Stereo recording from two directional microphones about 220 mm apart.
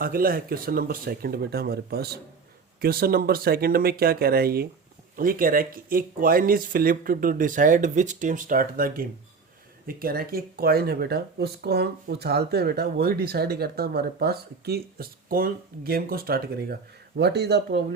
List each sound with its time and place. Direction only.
0.0 s speech: 40° right (ahead or behind)